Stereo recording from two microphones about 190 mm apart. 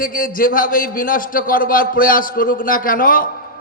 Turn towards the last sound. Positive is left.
turn(degrees=45)  # may be behind; listen again after turning